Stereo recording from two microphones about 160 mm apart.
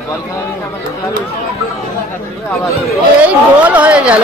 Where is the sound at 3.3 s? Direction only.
10° right (ahead or behind).